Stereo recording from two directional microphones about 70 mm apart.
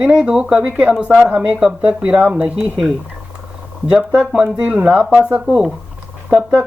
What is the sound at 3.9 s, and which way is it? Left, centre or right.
Speech, centre.